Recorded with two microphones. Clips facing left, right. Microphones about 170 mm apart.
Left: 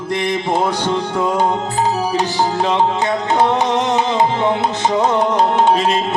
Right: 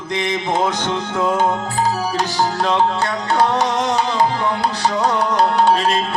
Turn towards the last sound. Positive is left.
turn(degrees=20)  # may be behind; listen again after turning